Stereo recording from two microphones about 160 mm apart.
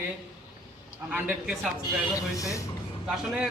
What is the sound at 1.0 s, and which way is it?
Speech, 5° right (ahead or behind).